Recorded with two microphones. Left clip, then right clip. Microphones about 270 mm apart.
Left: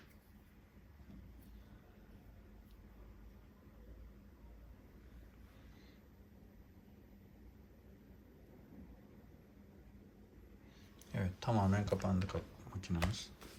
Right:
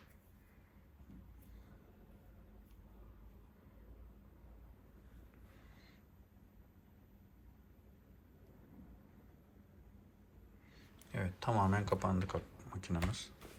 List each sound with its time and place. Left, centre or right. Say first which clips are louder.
11.1 s speech: right 1 dB; centre